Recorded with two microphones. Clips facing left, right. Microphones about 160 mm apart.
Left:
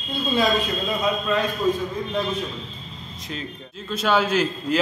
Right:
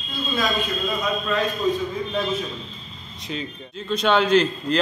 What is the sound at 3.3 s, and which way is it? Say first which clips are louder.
A man's voice: right 3 dB; centre (ahead or behind).